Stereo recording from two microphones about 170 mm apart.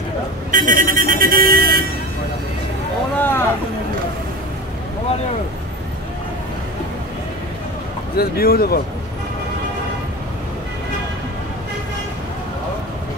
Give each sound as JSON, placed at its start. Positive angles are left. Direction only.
{"t": 0.5, "sound": "speech", "side_deg": -50}
{"t": 3.2, "sound": "a sound", "side_deg": 15}
{"t": 8.2, "sound": "speech", "side_deg": 65}